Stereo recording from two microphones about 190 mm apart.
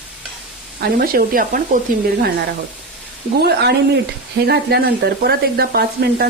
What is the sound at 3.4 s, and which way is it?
Speech, 55° right (ahead or behind).